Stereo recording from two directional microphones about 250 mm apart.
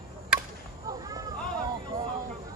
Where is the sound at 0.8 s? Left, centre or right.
Centre.